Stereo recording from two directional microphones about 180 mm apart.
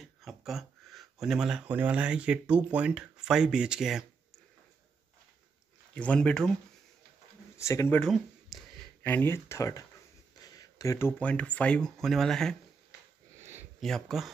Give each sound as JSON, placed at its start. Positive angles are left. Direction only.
{"t": 0.0, "sound": "speech", "side_deg": 0}
{"t": 5.9, "sound": "speech", "side_deg": 5}
{"t": 7.5, "sound": "speech", "side_deg": 15}
{"t": 8.0, "sound": "speech", "side_deg": 0}
{"t": 9.0, "sound": "speech", "side_deg": 10}
{"t": 13.4, "sound": "a sound", "side_deg": -15}
{"t": 13.7, "sound": "speech", "side_deg": 0}